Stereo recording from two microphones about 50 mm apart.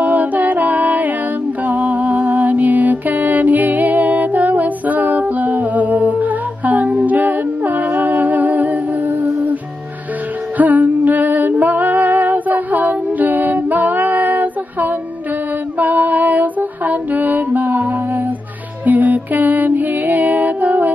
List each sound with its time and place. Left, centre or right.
0.0 s music: right
10.6 s music: right